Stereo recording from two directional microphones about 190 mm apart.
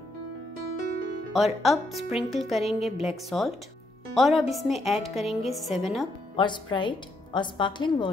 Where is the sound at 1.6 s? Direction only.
Centre (ahead or behind).